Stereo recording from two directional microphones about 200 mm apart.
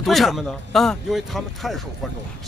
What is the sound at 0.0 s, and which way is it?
Speech, centre (ahead or behind).